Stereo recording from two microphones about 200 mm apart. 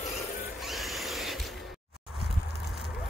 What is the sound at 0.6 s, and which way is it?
Music, centre (ahead or behind).